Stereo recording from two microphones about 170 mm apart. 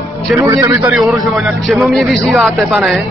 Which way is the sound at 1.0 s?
Centre (ahead or behind).